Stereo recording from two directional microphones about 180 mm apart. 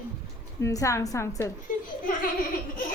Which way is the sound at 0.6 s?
20° left (ahead or behind).